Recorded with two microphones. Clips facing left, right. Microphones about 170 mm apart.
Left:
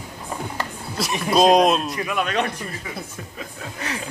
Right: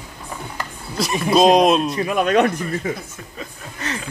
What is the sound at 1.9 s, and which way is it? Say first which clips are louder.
Speech: right 6 dB; 35° right (ahead or behind).